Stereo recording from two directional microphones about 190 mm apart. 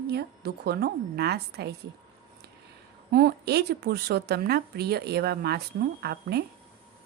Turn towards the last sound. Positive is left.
turn(degrees=-60)  # may be behind; listen again after turning